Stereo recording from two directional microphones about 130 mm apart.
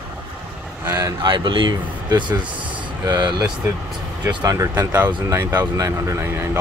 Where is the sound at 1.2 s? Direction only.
40° right (ahead or behind).